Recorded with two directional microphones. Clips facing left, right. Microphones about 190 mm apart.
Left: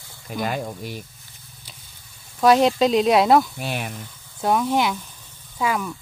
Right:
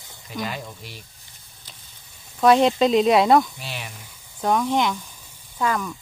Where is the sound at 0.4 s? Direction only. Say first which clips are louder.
Left 4 dB; 50° left (ahead or behind).